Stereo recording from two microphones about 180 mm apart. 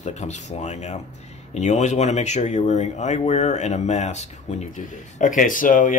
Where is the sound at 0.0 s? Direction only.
40° left (ahead or behind).